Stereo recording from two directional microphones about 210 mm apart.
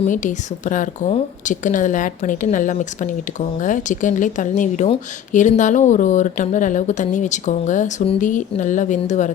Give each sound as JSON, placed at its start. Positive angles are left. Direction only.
{"t": 0.1, "sound": "a woman's voice", "side_deg": 35}